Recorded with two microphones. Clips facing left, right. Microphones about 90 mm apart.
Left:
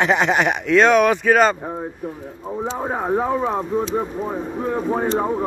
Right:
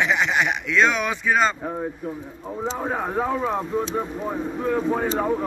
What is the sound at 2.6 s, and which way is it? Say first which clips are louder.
Speech: left 2 dB; 15° left (ahead or behind).